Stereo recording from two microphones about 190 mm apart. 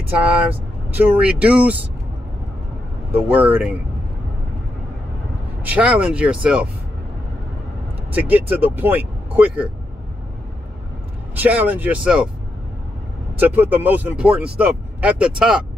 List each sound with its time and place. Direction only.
0.8 s speech: 10° right (ahead or behind)
3.1 s speech: 10° right (ahead or behind)
5.6 s speech: 5° right (ahead or behind)
8.1 s speech: 10° right (ahead or behind)
11.3 s speech: 10° right (ahead or behind)
13.4 s speech: 10° right (ahead or behind)